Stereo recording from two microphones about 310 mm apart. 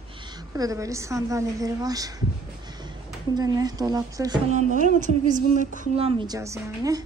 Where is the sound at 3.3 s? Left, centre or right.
Centre.